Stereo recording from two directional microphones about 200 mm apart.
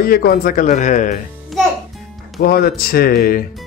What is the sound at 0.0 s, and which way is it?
Speech, 50° left (ahead or behind).